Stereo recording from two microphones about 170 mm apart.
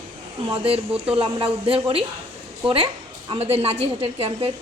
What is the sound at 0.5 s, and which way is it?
A woman's voice, 35° right (ahead or behind).